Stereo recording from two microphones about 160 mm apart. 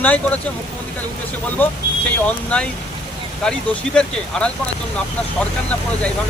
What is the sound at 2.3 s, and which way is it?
Speech, 10° left (ahead or behind).